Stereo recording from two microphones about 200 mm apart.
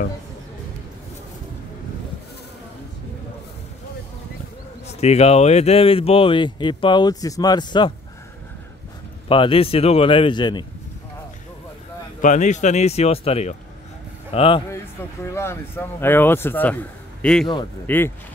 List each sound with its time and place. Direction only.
5.0 s speech: 30° left (ahead or behind)
9.3 s speech: 25° left (ahead or behind)
12.2 s speech: 40° left (ahead or behind)
15.3 s a man's voice: 15° left (ahead or behind)